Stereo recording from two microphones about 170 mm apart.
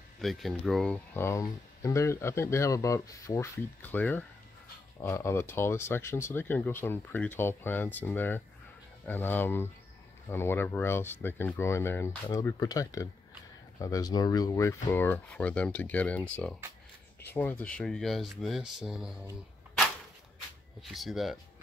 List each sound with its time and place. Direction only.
0.2 s speech: centre (ahead or behind)
17.3 s speech: 10° left (ahead or behind)
20.8 s speech: centre (ahead or behind)